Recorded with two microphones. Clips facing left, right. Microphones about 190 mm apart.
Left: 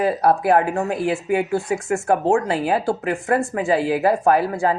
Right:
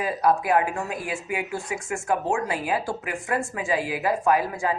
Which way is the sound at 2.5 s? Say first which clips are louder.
Left 6 dB; 65° left (ahead or behind).